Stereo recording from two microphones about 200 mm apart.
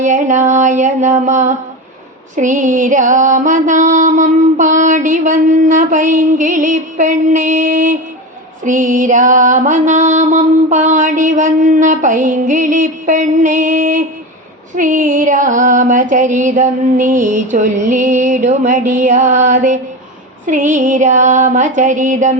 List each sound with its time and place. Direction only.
0.0 s mantra: 40° right (ahead or behind)